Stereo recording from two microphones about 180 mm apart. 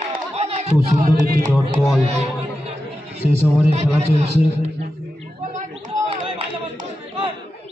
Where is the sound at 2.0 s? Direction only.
35° right (ahead or behind).